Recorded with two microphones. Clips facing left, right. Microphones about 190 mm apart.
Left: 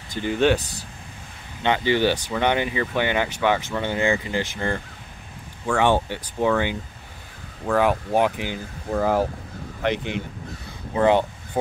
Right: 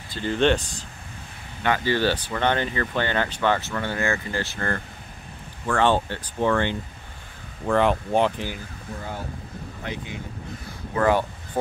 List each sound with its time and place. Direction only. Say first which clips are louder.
0.1 s speech: left 1 dB; 10° left (ahead or behind)
1.6 s speech: left 2 dB; 20° left (ahead or behind)
8.9 s speech: left 14 dB; 90° left
9.8 s speech: left 10 dB; 75° left (ahead or behind)
11.0 s speech: left 3 dB; 20° left (ahead or behind)